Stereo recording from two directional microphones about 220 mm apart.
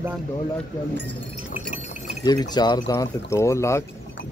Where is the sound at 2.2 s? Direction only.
20° left (ahead or behind).